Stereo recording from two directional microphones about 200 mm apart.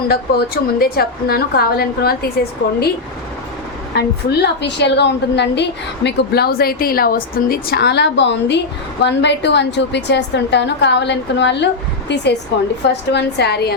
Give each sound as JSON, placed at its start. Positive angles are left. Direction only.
{"t": 0.1, "sound": "a woman's voice", "side_deg": 50}
{"t": 3.9, "sound": "a woman's voice", "side_deg": 55}